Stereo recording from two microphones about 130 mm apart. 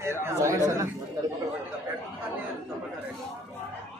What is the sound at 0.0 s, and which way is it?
Speech, 20° right (ahead or behind).